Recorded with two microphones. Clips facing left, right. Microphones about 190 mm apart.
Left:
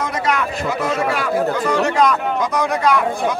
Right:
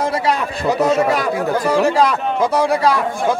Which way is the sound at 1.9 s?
30° right (ahead or behind).